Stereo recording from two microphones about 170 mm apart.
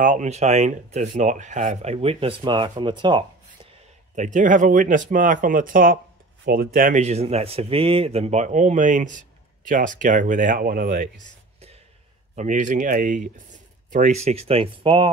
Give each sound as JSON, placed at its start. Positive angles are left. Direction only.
{"t": 0.0, "sound": "speech", "side_deg": -45}
{"t": 4.1, "sound": "speech", "side_deg": -45}
{"t": 12.4, "sound": "speech", "side_deg": -50}